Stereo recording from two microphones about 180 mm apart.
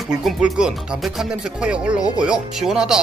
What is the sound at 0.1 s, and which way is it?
Speech, 5° right (ahead or behind).